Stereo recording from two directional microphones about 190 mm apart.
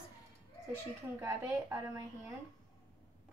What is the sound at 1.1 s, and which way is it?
Speech, 15° right (ahead or behind).